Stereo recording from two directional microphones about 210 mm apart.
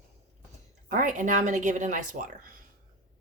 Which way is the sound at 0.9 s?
35° right (ahead or behind).